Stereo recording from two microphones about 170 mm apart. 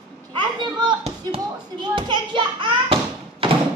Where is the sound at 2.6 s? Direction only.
30° right (ahead or behind).